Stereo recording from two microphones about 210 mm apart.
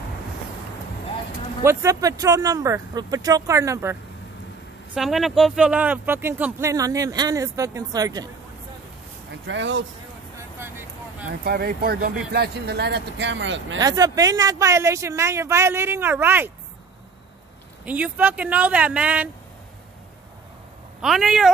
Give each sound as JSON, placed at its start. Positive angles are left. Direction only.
{"t": 1.6, "sound": "speech", "side_deg": -15}
{"t": 4.9, "sound": "speech", "side_deg": 0}
{"t": 9.5, "sound": "speech", "side_deg": -60}
{"t": 10.6, "sound": "vehicle", "side_deg": -10}
{"t": 11.4, "sound": "speech", "side_deg": -45}
{"t": 13.7, "sound": "speech", "side_deg": -15}
{"t": 17.8, "sound": "speech", "side_deg": -5}
{"t": 21.0, "sound": "speech", "side_deg": 0}